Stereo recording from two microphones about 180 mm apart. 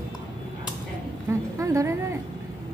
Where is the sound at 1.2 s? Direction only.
15° right (ahead or behind).